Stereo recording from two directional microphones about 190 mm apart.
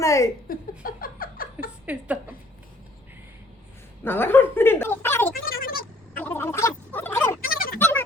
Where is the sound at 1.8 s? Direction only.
5° right (ahead or behind).